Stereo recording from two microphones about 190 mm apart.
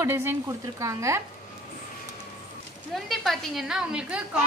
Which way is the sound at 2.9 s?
Centre (ahead or behind).